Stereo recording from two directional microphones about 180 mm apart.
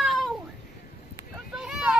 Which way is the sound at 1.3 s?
5° right (ahead or behind).